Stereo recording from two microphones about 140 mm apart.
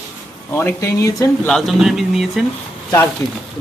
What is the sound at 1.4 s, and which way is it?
A man's voice, centre (ahead or behind).